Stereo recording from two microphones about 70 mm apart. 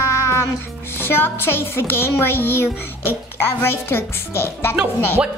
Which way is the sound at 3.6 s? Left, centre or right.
Left.